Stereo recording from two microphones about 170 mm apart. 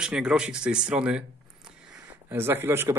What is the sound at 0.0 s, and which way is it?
Speech, 5° right (ahead or behind).